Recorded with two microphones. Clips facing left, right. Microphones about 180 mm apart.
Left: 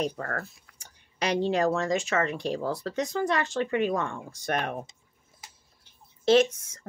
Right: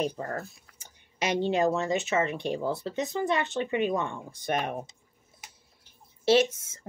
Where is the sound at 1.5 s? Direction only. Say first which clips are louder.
Right 1 dB; 25° right (ahead or behind).